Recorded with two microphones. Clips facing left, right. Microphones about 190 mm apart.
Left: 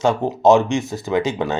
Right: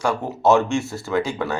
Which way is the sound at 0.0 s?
20° left (ahead or behind).